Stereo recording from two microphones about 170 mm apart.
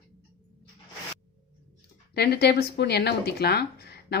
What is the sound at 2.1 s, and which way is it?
Speech, 70° left (ahead or behind).